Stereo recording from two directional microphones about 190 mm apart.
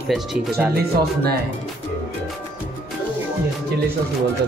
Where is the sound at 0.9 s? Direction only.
55° right (ahead or behind).